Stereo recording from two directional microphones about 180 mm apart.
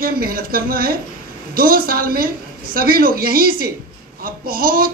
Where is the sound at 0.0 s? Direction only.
55° right (ahead or behind).